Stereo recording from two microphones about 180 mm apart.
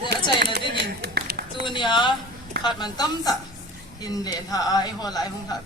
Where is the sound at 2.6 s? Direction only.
25° left (ahead or behind).